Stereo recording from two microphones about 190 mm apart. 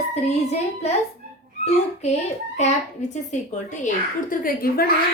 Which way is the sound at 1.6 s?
35° left (ahead or behind).